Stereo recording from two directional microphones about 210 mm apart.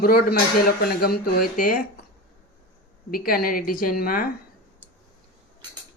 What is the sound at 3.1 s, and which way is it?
Speech, 45° left (ahead or behind).